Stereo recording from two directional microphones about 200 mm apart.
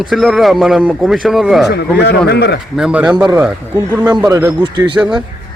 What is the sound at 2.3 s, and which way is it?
Speech, 55° left (ahead or behind).